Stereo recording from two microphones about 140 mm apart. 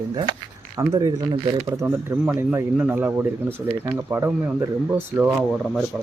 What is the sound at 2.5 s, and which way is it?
Speech, 15° right (ahead or behind).